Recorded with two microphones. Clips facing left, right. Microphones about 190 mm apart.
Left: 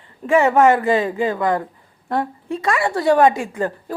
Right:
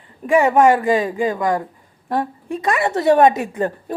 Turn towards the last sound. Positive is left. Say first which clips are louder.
# right 1 dB
turn(degrees=-20)  # may be behind; listen again after turning